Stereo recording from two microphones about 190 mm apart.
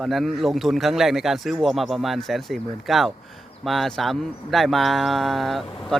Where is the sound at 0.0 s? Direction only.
Centre (ahead or behind).